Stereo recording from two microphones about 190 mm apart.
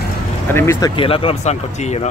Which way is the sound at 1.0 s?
30° left (ahead or behind).